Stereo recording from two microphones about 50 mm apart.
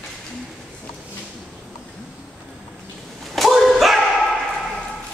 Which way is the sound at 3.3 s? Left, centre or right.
Centre.